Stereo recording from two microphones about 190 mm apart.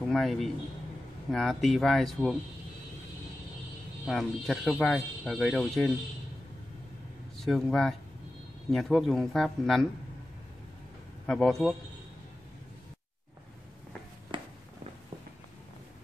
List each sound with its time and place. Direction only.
0.1 s speech: centre (ahead or behind)
4.0 s speech: centre (ahead or behind)
7.3 s speech: centre (ahead or behind)
11.2 s speech: 5° left (ahead or behind)
14.3 s a sound: 25° right (ahead or behind)